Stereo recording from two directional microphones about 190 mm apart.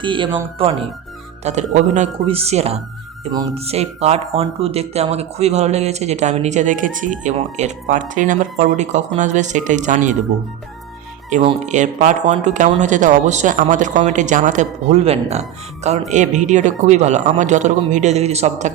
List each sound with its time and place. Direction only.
0.0 s speech: 25° right (ahead or behind); by 10.2 s 40° right (ahead or behind)
11.6 s speech: 40° right (ahead or behind)